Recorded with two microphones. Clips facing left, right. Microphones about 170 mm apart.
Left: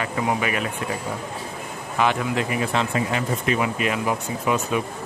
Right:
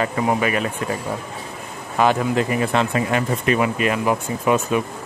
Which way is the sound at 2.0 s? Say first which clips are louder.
Right 4 dB; 40° right (ahead or behind).